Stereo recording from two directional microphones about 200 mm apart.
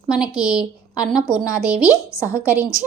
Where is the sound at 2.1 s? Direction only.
15° left (ahead or behind).